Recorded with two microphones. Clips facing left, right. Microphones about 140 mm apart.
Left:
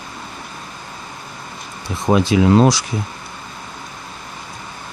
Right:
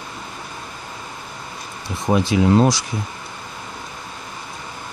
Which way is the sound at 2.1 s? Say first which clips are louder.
Left 3 dB; 90° left.